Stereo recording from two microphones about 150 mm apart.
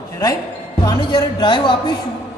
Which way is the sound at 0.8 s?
30° left (ahead or behind).